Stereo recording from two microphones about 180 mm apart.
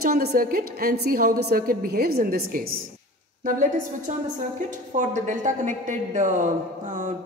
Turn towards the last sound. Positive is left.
turn(degrees=-45)  # may be behind; listen again after turning